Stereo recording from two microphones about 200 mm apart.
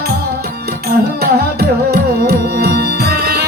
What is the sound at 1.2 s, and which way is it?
Music, 50° right (ahead or behind).